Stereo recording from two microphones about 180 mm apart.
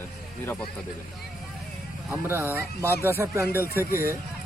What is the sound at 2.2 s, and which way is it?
Speech, 10° right (ahead or behind).